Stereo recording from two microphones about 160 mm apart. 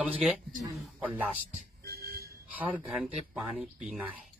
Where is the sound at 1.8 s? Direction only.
75° right (ahead or behind).